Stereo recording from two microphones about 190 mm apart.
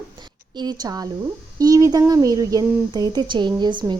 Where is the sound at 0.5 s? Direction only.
20° right (ahead or behind).